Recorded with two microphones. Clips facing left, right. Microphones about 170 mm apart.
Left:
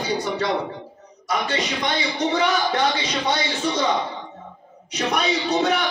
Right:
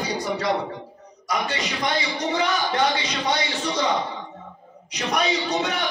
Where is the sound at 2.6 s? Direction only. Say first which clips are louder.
Left 1 dB; centre (ahead or behind).